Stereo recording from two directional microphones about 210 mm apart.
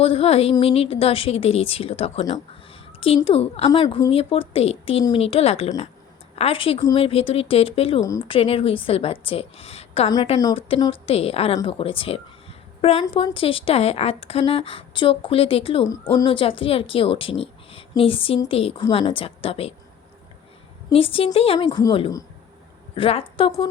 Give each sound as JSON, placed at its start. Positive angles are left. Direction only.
{"t": 0.0, "sound": "a woman's voice", "side_deg": 25}
{"t": 10.1, "sound": "speech", "side_deg": 20}
{"t": 20.9, "sound": "speech", "side_deg": 25}